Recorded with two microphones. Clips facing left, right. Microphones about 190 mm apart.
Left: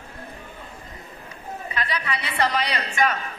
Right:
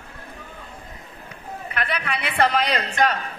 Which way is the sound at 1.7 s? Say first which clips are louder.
Right 2 dB; 60° right (ahead or behind).